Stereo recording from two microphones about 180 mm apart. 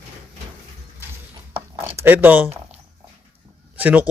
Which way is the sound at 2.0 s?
10° right (ahead or behind).